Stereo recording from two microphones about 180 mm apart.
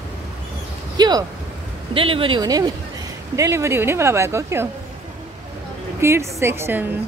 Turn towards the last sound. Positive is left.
turn(degrees=-10)  # may be behind; listen again after turning